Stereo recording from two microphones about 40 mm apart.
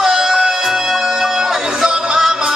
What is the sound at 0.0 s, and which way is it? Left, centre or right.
Music, centre.